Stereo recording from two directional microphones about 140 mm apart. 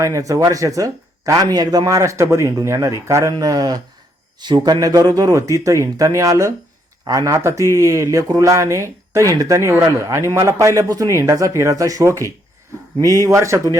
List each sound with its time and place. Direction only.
0.0 s speech: 25° right (ahead or behind)